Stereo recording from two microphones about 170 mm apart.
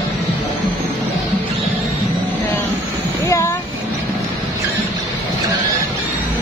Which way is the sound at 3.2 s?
15° left (ahead or behind).